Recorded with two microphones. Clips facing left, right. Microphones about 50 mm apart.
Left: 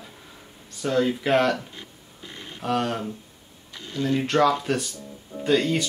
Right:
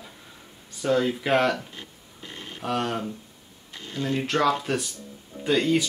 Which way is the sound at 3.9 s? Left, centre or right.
Right.